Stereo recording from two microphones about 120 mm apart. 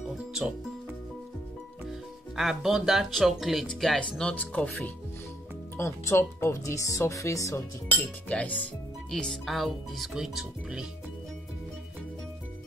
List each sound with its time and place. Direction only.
2.3 s speech: centre (ahead or behind)
5.8 s speech: 20° left (ahead or behind)
8.3 s speech: 10° left (ahead or behind); by 10.9 s 5° right (ahead or behind)